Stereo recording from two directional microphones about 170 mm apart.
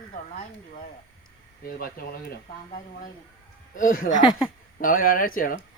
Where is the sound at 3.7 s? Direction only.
55° left (ahead or behind).